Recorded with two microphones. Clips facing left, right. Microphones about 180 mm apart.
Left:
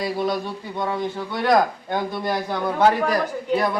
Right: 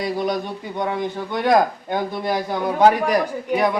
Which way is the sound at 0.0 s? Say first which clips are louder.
Right 1 dB; 20° right (ahead or behind).